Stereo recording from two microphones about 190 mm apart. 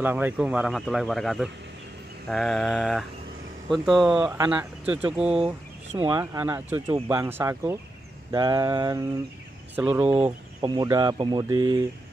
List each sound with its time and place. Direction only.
0.0 s speech: 10° right (ahead or behind)
6.0 s speech: 20° right (ahead or behind)
9.8 s speech: 10° right (ahead or behind)
10.6 s speech: 20° right (ahead or behind)